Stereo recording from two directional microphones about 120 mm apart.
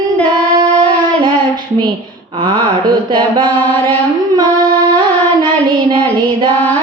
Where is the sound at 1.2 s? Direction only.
40° right (ahead or behind).